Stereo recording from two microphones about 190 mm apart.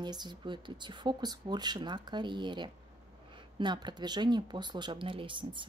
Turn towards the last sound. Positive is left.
turn(degrees=-25)  # may be behind; listen again after turning